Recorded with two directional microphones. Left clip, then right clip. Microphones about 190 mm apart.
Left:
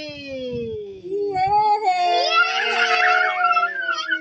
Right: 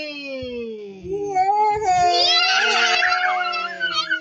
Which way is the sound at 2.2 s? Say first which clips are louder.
Right 1 dB; 15° left (ahead or behind).